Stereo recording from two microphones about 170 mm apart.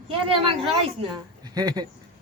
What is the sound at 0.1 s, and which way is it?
A child's voice, 30° right (ahead or behind).